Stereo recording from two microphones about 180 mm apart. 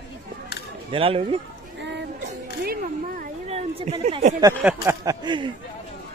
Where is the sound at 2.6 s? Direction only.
55° right (ahead or behind).